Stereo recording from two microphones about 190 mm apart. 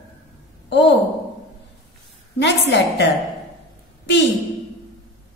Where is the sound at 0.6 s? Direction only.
70° left (ahead or behind).